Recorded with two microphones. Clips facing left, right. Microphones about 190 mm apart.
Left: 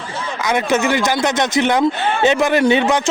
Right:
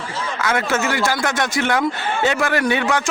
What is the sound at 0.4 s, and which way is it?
Speech, 20° left (ahead or behind).